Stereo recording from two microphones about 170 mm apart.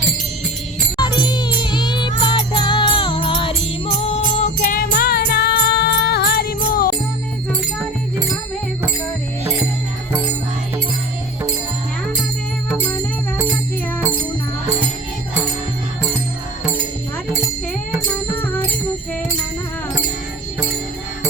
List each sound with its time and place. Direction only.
0.9 s music: 25° left (ahead or behind)
4.7 s music: 60° left (ahead or behind)
12.7 s music: 10° left (ahead or behind)